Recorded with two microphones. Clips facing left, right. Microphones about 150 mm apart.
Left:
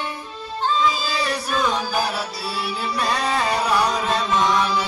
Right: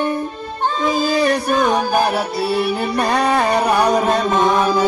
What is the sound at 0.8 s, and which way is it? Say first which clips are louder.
Music: right 7 dB; 55° right (ahead or behind).